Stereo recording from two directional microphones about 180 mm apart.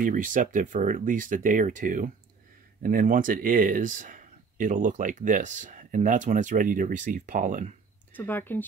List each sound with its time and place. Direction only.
0.0 s speech: 45° right (ahead or behind)
8.1 s speech: 10° left (ahead or behind)